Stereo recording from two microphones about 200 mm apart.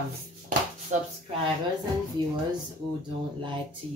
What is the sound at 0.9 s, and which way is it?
Speech, 40° right (ahead or behind).